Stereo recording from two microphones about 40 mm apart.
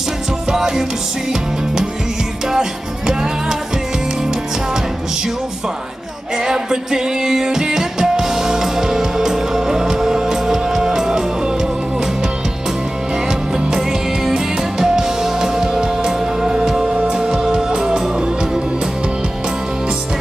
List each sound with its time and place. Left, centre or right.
0.5 s music: centre
3.1 s music: centre
6.3 s music: centre
13.3 s music: right
13.7 s music: centre